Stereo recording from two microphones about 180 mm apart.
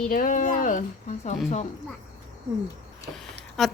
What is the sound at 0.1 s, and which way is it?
Speech, 50° left (ahead or behind).